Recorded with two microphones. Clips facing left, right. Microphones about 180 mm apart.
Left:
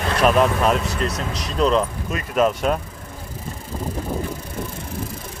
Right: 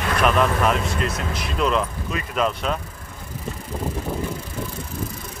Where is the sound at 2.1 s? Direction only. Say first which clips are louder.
Left 4 dB; 45° left (ahead or behind).